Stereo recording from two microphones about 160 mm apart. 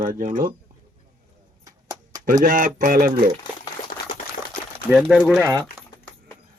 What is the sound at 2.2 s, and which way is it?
Speech, 60° right (ahead or behind).